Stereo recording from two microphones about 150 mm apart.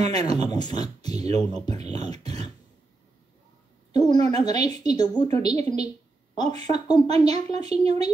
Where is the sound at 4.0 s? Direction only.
25° left (ahead or behind).